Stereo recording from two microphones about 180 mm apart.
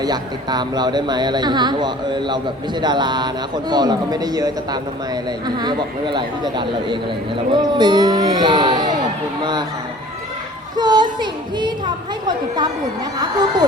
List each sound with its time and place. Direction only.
0.0 s speech: 20° right (ahead or behind)
10.8 s a woman's voice: 25° right (ahead or behind)